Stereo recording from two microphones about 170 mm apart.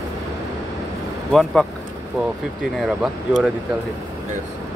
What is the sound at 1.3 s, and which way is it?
Speech, centre (ahead or behind).